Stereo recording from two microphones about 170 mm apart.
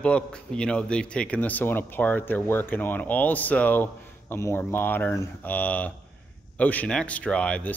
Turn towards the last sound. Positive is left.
turn(degrees=5)  # may be behind; listen again after turning